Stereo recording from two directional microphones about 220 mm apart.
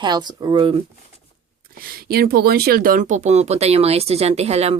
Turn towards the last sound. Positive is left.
turn(degrees=-30)  # may be behind; listen again after turning